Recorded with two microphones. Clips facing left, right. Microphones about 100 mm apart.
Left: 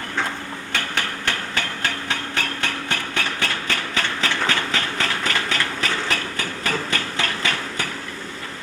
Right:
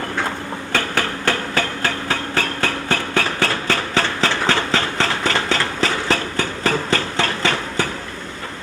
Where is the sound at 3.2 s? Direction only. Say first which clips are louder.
Right 5 dB; 35° right (ahead or behind).